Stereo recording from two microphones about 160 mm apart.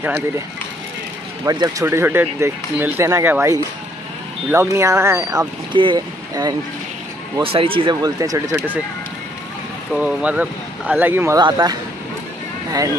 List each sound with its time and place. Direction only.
1.4 s speech: 25° right (ahead or behind)
5.7 s speech: 30° right (ahead or behind)
7.4 s speech: 35° right (ahead or behind)
9.9 s speech: 5° right (ahead or behind)
11.3 s speech: 25° right (ahead or behind)